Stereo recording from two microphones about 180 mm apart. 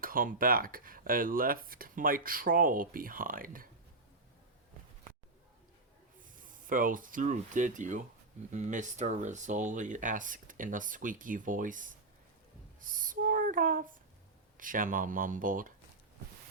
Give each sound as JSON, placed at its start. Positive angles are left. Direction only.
{"t": 0.0, "sound": "speech", "side_deg": -50}
{"t": 6.5, "sound": "speech", "side_deg": -50}
{"t": 12.8, "sound": "music", "side_deg": -50}
{"t": 14.6, "sound": "speech", "side_deg": -50}